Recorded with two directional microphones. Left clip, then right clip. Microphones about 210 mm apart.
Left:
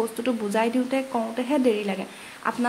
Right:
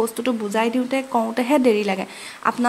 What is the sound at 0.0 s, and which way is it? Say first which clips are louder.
A woman's voice: right 4 dB; 15° right (ahead or behind).